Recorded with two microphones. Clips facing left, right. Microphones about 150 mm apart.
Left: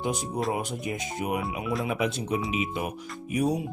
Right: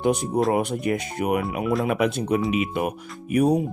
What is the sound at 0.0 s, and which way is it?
Speech, 60° right (ahead or behind).